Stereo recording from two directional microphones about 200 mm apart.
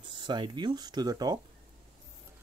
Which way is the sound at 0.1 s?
25° right (ahead or behind).